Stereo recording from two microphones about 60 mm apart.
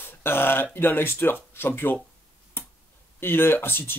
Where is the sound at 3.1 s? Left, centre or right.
Left.